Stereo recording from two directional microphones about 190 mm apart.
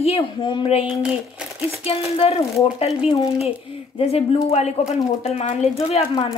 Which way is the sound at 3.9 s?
35° left (ahead or behind).